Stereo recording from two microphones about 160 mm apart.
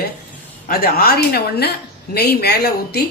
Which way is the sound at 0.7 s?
70° left (ahead or behind).